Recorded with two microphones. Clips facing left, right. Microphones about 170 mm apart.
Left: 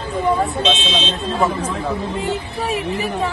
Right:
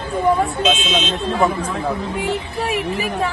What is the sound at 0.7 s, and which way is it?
Speech, 30° left (ahead or behind).